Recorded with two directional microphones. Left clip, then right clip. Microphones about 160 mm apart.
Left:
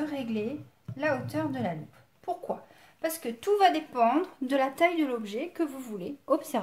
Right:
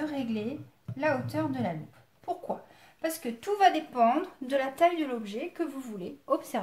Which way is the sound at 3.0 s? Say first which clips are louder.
Left 2 dB; 35° left (ahead or behind).